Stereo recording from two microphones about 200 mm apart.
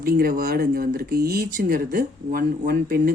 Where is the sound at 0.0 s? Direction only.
45° right (ahead or behind).